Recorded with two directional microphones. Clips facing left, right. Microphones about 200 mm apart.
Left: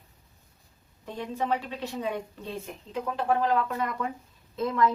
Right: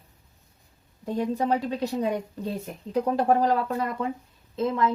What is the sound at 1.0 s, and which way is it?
Speech, 40° right (ahead or behind).